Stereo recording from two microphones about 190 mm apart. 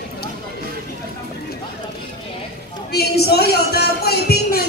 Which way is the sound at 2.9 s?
55° left (ahead or behind).